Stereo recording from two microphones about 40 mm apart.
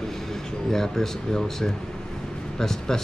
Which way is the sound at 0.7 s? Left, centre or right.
Centre.